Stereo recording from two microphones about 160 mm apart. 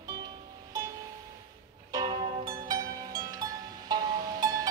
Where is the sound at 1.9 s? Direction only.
25° right (ahead or behind).